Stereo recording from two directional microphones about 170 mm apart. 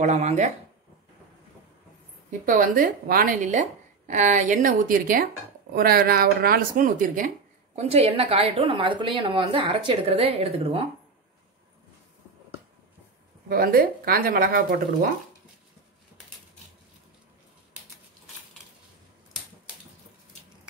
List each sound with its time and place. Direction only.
0.0 s a woman's voice: 45° right (ahead or behind)
2.4 s a woman's voice: 50° right (ahead or behind)
7.8 s a woman's voice: 35° right (ahead or behind)
13.5 s speech: 60° right (ahead or behind)